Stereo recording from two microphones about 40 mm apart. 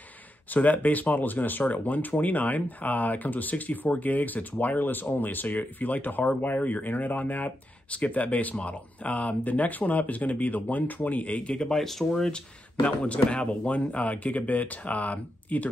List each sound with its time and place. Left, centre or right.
0.5 s speech: left
11.6 s speech: centre
12.8 s speech: left